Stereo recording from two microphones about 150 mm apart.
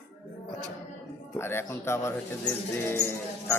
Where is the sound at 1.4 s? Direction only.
15° left (ahead or behind).